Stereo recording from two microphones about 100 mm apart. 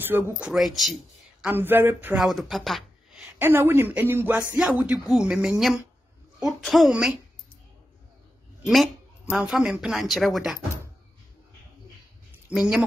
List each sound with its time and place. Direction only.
0.0 s speech: 20° right (ahead or behind)
0.5 s speech: centre (ahead or behind)
1.5 s speech: 20° right (ahead or behind)
2.1 s speech: centre (ahead or behind)
3.3 s speech: 20° right (ahead or behind)
9.2 s speech: 10° right (ahead or behind)
12.3 s a sound: 10° right (ahead or behind)